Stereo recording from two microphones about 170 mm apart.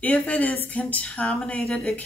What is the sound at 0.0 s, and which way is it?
Speech, 10° left (ahead or behind).